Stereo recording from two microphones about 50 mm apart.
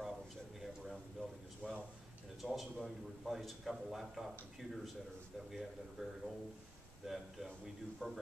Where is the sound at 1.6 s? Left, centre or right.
Right.